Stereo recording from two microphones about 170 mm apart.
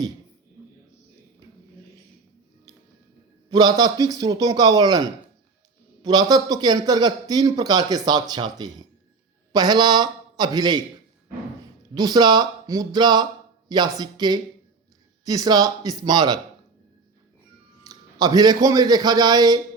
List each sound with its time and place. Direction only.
3.5 s a man's voice: 25° right (ahead or behind)
11.9 s a man's voice: 25° right (ahead or behind)
17.8 s a man's voice: 25° right (ahead or behind)